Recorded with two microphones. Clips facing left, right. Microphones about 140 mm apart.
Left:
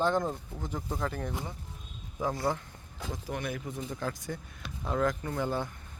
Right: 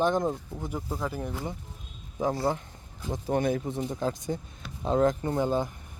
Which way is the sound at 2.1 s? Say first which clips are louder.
Right 4 dB; 25° right (ahead or behind).